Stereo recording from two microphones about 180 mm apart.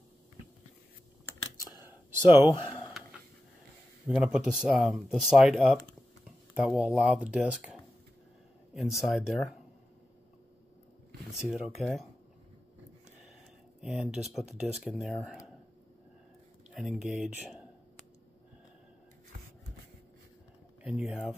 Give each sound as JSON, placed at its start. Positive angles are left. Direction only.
{"t": 1.9, "sound": "a sound", "side_deg": -10}
{"t": 2.3, "sound": "speech", "side_deg": 30}
{"t": 4.2, "sound": "speech", "side_deg": -5}
{"t": 11.4, "sound": "speech", "side_deg": 0}
{"t": 13.7, "sound": "speech", "side_deg": 0}
{"t": 16.7, "sound": "speech", "side_deg": 0}
{"t": 20.8, "sound": "speech", "side_deg": -5}